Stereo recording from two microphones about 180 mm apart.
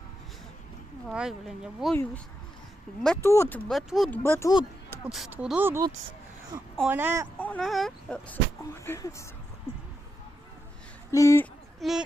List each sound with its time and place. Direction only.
1.0 s speech: 5° right (ahead or behind)
3.2 s speech: 15° left (ahead or behind)
3.7 s speech: centre (ahead or behind)
4.2 s speech: 15° left (ahead or behind)
4.9 s speech: 5° right (ahead or behind)
7.3 s speech: 10° left (ahead or behind)
11.1 s speech: 15° left (ahead or behind)
11.8 s speech: centre (ahead or behind)